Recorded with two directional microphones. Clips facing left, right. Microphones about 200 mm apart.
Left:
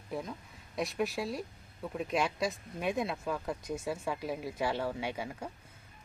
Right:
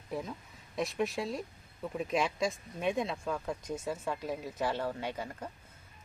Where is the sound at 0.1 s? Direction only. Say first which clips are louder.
Even; centre (ahead or behind).